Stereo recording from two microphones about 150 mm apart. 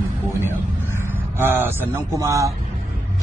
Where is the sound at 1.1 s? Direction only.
15° right (ahead or behind).